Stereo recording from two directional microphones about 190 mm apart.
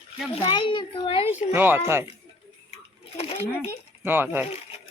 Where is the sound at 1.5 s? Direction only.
10° right (ahead or behind).